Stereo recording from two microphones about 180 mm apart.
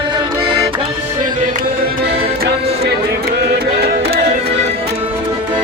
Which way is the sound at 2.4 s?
60° right (ahead or behind).